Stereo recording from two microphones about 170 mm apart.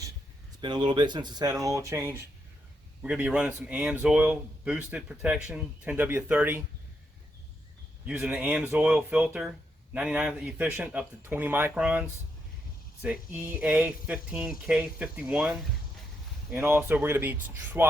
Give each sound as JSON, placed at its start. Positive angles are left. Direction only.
{"t": 0.6, "sound": "speech", "side_deg": -25}
{"t": 3.0, "sound": "speech", "side_deg": -5}
{"t": 8.0, "sound": "speech", "side_deg": -10}